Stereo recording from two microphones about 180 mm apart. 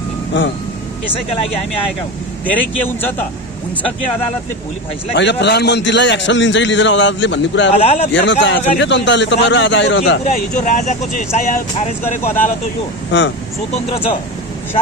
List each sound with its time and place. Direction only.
0.3 s a man's voice: 90° left
2.5 s speech: 10° left (ahead or behind)
5.1 s a man's voice: 75° left (ahead or behind)
7.7 s a man's voice: 35° left (ahead or behind)
8.1 s a man's voice: 85° left
10.2 s speech: 45° left (ahead or behind)